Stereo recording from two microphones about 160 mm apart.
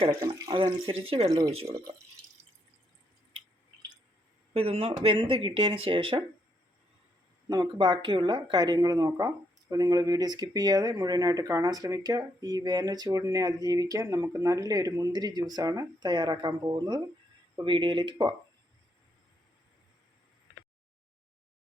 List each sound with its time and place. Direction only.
0.3 s speech: 20° right (ahead or behind)
0.6 s speech: 35° right (ahead or behind)
4.5 s speech: 40° right (ahead or behind)
7.4 s speech: 25° right (ahead or behind)